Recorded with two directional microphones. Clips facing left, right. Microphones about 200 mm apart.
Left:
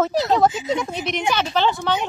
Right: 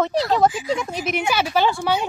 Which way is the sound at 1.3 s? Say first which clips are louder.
Right 1 dB; 10° right (ahead or behind).